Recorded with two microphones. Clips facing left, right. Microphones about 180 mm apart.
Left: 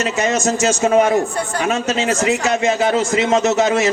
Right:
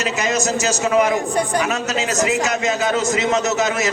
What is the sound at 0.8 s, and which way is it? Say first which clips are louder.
Speech: left 3 dB; 35° left (ahead or behind).